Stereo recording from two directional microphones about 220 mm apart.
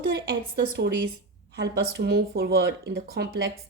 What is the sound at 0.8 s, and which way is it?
Speech, 50° right (ahead or behind).